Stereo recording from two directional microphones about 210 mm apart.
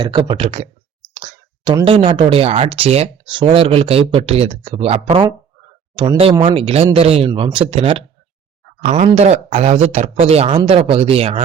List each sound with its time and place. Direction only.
0.0 s speech: 20° right (ahead or behind)